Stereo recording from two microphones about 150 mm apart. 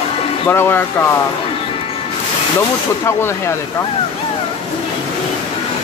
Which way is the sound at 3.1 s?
20° left (ahead or behind).